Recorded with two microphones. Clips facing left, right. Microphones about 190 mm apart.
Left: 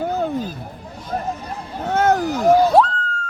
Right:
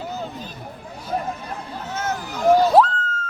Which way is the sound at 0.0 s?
60° left (ahead or behind).